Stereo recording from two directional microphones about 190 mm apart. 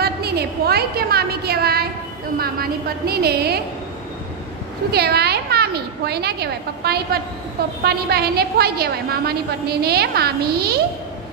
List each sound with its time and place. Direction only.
0.0 s a woman's voice: 55° right (ahead or behind)
4.9 s a woman's voice: 55° right (ahead or behind)